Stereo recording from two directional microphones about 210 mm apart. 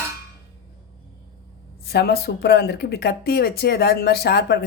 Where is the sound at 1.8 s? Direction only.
50° left (ahead or behind).